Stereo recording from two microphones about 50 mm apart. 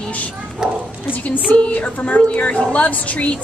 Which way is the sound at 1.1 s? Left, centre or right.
Left.